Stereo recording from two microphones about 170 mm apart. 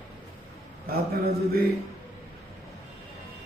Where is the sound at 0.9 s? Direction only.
60° right (ahead or behind).